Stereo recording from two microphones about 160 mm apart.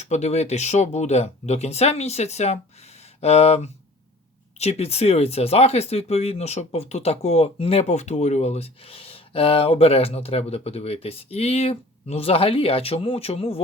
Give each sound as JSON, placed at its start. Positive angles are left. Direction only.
{"t": 0.0, "sound": "speech", "side_deg": 45}